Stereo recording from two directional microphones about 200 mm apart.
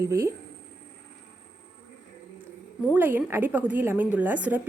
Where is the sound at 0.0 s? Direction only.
15° right (ahead or behind).